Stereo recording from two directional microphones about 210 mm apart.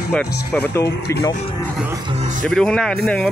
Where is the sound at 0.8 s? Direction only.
50° left (ahead or behind).